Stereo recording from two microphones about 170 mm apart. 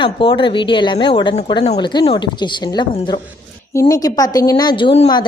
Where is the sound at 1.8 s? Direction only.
25° left (ahead or behind).